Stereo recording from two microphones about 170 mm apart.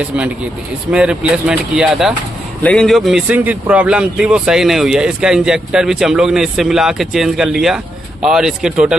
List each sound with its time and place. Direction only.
0.9 s speech: 5° right (ahead or behind)